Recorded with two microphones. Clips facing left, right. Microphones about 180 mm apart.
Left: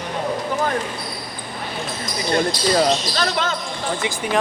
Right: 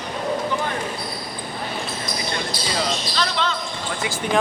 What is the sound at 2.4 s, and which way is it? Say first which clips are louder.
Speech: left 11 dB; 45° left (ahead or behind).